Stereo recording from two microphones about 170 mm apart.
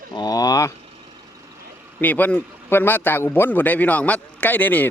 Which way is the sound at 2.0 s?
10° left (ahead or behind).